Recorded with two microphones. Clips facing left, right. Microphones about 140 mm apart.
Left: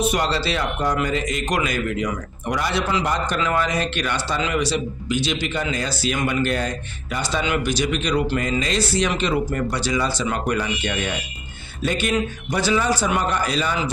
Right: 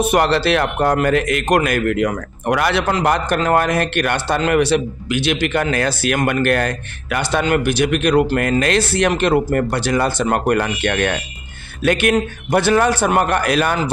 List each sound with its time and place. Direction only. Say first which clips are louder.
0.0 s a man's voice: right 6 dB; 60° right (ahead or behind)